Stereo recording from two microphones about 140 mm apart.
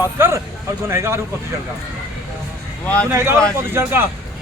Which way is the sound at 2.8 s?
10° left (ahead or behind).